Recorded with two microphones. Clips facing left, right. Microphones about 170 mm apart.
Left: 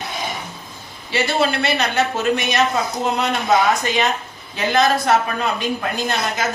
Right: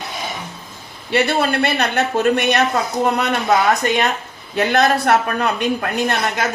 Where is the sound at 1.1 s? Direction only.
55° right (ahead or behind).